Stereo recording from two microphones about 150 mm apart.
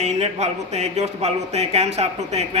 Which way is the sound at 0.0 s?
45° right (ahead or behind).